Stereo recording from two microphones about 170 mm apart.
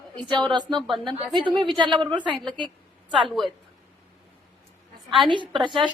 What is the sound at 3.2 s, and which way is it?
Speech, centre (ahead or behind).